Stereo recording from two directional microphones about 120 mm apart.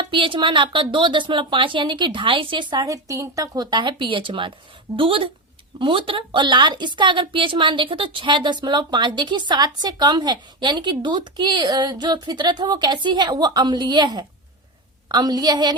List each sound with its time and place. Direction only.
0.1 s a woman's voice: 45° right (ahead or behind)